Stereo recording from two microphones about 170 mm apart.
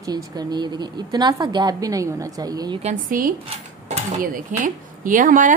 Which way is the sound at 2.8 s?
40° right (ahead or behind).